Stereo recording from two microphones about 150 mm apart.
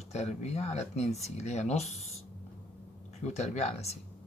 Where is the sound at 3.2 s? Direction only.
50° left (ahead or behind).